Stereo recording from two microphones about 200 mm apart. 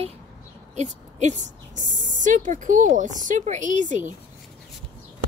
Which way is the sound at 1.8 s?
40° right (ahead or behind).